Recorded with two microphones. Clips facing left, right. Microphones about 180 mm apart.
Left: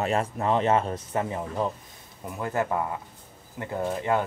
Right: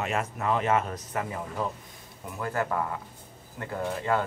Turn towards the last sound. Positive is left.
turn(degrees=20)  # may be behind; listen again after turning